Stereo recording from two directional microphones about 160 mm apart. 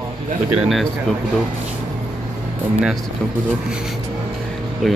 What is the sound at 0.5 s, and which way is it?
Speech, 5° right (ahead or behind).